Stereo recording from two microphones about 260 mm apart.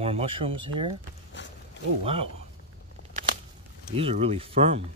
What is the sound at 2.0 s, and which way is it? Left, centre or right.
Speech, right.